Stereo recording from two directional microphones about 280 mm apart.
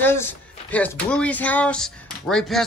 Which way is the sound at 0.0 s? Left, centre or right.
Centre.